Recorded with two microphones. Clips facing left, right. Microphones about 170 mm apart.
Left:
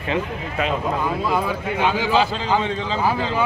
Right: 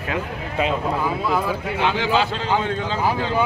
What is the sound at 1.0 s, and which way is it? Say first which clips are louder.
A man's voice: even; centre (ahead or behind).